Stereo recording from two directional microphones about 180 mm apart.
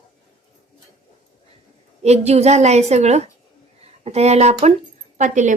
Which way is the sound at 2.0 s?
35° right (ahead or behind).